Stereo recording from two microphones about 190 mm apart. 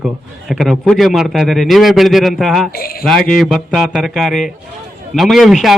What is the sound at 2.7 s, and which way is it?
Speech, 50° left (ahead or behind).